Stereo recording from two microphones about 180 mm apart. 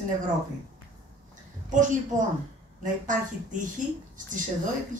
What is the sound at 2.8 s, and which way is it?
Speech, 45° right (ahead or behind).